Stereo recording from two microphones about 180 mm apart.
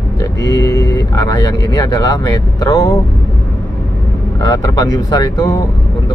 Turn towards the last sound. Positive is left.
turn(degrees=20)  # may be behind; listen again after turning